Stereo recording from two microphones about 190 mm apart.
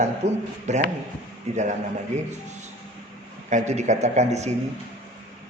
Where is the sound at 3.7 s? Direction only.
35° right (ahead or behind).